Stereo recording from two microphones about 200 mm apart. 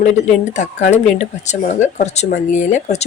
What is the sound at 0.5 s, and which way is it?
A woman's voice, 35° left (ahead or behind).